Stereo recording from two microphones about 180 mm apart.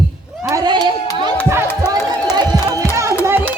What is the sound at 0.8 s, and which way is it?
Speech, 20° left (ahead or behind).